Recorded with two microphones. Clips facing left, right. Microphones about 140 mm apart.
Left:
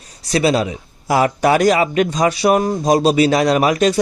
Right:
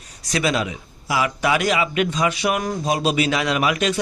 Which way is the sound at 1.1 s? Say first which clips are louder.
Left 6 dB; 45° left (ahead or behind).